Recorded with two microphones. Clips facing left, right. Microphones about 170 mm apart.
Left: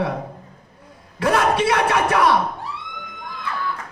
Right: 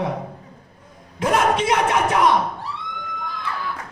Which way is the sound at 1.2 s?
20° right (ahead or behind).